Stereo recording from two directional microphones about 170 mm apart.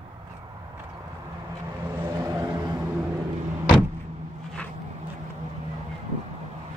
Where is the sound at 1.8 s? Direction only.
15° right (ahead or behind).